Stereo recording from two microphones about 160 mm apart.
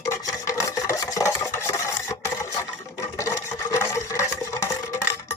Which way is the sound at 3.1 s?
20° left (ahead or behind).